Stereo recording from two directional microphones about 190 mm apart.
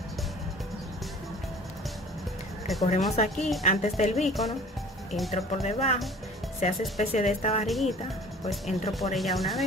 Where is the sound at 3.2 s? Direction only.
40° left (ahead or behind).